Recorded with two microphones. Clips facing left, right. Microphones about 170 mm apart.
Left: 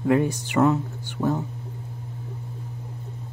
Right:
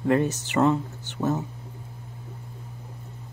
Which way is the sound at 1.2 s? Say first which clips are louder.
Left 1 dB; 5° right (ahead or behind).